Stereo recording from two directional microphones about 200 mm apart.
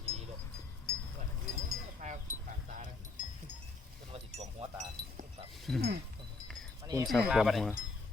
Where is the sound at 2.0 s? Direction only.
40° right (ahead or behind).